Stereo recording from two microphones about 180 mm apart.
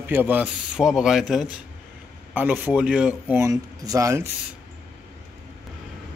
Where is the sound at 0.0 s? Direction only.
10° right (ahead or behind).